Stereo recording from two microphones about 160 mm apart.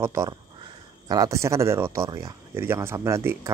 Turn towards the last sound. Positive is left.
turn(degrees=-15)  # may be behind; listen again after turning